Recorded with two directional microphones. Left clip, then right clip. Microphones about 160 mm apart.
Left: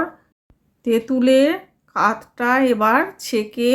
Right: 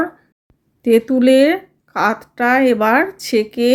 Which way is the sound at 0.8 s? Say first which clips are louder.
Right 5 dB; 20° right (ahead or behind).